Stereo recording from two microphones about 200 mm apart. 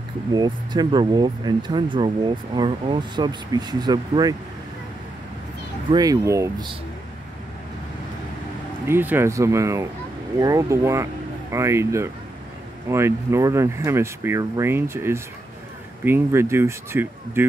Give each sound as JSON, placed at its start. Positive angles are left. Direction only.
{"t": 0.3, "sound": "speech", "side_deg": -20}
{"t": 5.9, "sound": "speech", "side_deg": -20}
{"t": 8.8, "sound": "speech", "side_deg": -10}